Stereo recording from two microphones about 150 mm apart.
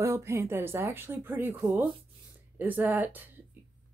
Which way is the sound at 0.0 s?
20° right (ahead or behind).